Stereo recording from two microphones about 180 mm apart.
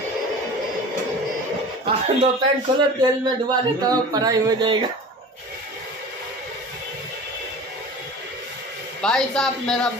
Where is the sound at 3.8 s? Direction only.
20° right (ahead or behind).